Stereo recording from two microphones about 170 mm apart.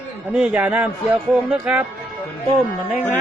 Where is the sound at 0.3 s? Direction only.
5° right (ahead or behind).